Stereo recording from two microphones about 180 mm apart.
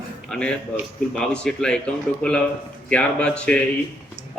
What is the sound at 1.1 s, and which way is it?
A man's voice, 5° left (ahead or behind).